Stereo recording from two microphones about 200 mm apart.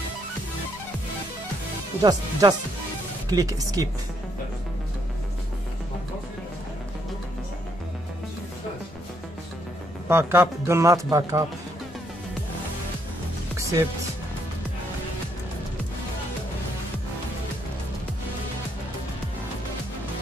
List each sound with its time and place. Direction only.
2.0 s speech: 20° right (ahead or behind)
10.0 s a man's voice: 10° right (ahead or behind)
13.6 s music: 15° right (ahead or behind)